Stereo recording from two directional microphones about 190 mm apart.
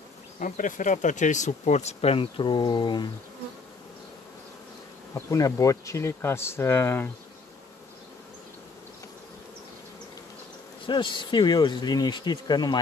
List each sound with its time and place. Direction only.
0.4 s speech: 40° left (ahead or behind); by 3.1 s 25° left (ahead or behind)
5.1 s speech: 15° left (ahead or behind)
10.9 s speech: 25° left (ahead or behind)